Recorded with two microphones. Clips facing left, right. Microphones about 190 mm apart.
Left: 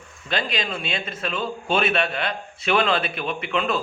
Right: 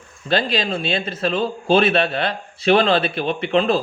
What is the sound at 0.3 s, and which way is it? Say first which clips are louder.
Speech: right 6 dB; 35° right (ahead or behind).